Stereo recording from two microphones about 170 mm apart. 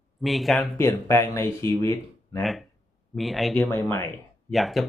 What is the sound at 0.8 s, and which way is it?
Speech, 15° left (ahead or behind).